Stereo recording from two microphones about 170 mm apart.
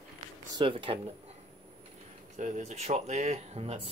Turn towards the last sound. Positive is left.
turn(degrees=-35)  # may be behind; listen again after turning